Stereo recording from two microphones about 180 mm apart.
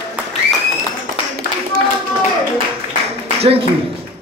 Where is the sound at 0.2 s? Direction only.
5° right (ahead or behind).